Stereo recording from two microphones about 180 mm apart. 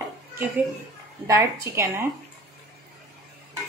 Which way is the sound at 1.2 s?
15° right (ahead or behind).